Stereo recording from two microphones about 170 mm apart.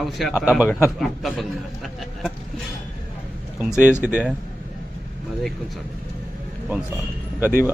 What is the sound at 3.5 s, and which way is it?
Speech, 10° right (ahead or behind).